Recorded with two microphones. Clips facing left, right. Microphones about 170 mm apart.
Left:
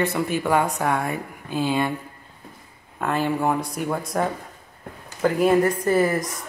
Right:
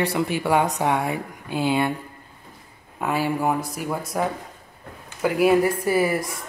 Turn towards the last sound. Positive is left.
turn(degrees=-10)  # may be behind; listen again after turning